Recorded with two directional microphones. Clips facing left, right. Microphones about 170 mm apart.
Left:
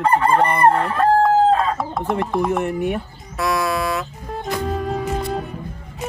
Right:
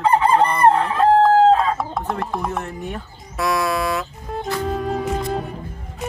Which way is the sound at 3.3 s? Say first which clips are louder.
Even; centre (ahead or behind).